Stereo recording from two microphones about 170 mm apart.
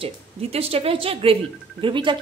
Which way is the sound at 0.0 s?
35° right (ahead or behind).